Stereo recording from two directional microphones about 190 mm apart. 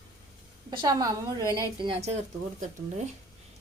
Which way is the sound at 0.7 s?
20° right (ahead or behind).